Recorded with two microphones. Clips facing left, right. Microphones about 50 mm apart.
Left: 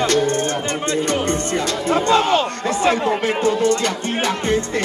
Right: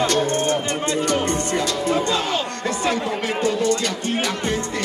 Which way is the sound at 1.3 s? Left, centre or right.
Left.